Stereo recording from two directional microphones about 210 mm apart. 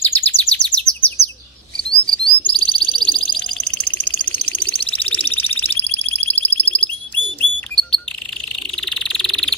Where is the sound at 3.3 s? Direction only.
5° left (ahead or behind).